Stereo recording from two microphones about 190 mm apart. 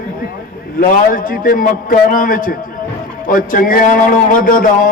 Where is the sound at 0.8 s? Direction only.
45° left (ahead or behind).